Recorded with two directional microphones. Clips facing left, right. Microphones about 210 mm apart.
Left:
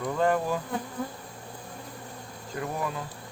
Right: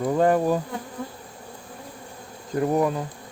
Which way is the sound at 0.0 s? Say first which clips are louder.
Right 6 dB; 35° right (ahead or behind).